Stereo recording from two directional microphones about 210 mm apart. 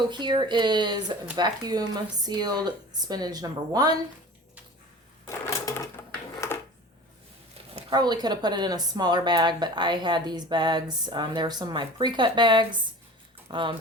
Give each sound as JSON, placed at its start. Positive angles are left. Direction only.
{"t": 0.1, "sound": "speech", "side_deg": -20}
{"t": 5.2, "sound": "a sound", "side_deg": 15}
{"t": 7.9, "sound": "speech", "side_deg": -20}